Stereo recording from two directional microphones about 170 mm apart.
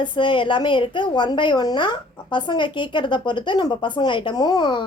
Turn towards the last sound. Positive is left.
turn(degrees=25)  # may be behind; listen again after turning